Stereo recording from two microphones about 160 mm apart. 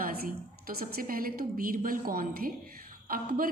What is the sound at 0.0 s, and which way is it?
A woman's voice, 65° right (ahead or behind).